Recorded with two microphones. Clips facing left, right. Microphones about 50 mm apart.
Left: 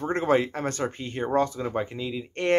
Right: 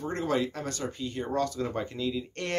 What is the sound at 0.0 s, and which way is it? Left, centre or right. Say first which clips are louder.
Speech: left 6 dB; left.